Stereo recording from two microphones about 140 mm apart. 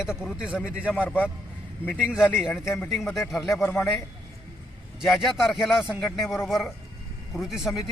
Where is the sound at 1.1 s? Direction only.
10° left (ahead or behind).